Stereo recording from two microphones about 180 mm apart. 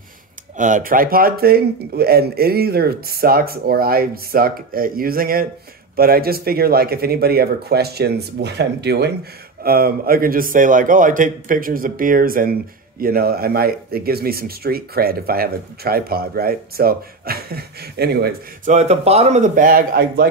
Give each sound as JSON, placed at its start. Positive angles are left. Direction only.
{"t": 0.6, "sound": "speech", "side_deg": -45}
{"t": 9.6, "sound": "a man's voice", "side_deg": -55}
{"t": 18.7, "sound": "speech", "side_deg": -40}